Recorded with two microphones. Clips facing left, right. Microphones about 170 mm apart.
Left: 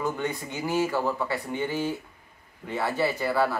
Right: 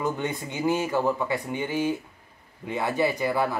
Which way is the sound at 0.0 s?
20° right (ahead or behind).